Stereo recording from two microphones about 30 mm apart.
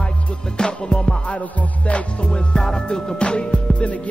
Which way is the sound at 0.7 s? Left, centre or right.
Left.